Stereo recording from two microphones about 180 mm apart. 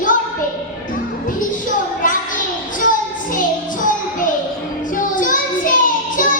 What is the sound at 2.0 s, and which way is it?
Child singing, 45° left (ahead or behind).